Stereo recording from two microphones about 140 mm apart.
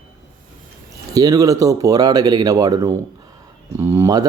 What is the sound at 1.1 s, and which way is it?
Speech, 25° right (ahead or behind).